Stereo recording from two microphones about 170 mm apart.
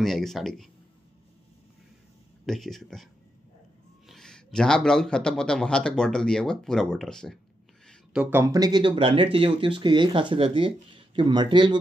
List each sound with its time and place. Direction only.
0.0 s a man's voice: centre (ahead or behind)
2.4 s a man's voice: centre (ahead or behind)
4.1 s a man's voice: 5° left (ahead or behind)
7.8 s a sound: 5° left (ahead or behind)
8.2 s speech: 15° right (ahead or behind)